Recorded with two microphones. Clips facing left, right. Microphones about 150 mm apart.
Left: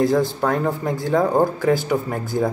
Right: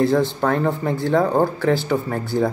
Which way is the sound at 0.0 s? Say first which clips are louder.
Even; 10° left (ahead or behind).